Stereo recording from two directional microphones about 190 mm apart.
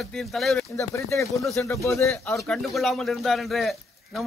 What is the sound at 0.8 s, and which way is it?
A man's voice, 15° left (ahead or behind).